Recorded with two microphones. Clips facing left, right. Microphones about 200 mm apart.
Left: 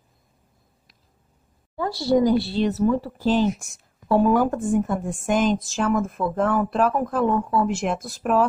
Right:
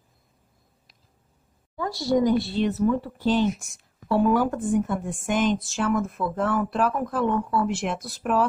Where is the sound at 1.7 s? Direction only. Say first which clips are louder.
Left 3 dB; 30° left (ahead or behind).